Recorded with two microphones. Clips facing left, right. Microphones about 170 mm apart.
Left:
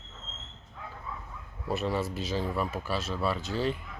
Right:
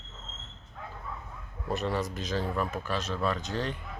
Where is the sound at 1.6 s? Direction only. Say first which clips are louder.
Left 1 dB; 5° left (ahead or behind).